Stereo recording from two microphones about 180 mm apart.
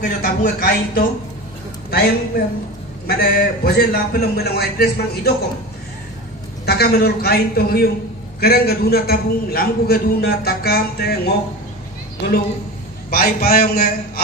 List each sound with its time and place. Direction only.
0.2 s a man's voice: 55° left (ahead or behind)
6.6 s a man's voice: 60° left (ahead or behind)
13.1 s a man's voice: 55° left (ahead or behind)